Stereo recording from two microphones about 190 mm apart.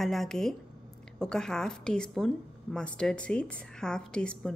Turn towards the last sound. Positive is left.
turn(degrees=5)  # may be behind; listen again after turning